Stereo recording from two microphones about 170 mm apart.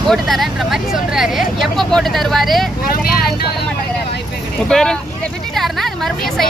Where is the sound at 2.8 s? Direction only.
60° left (ahead or behind).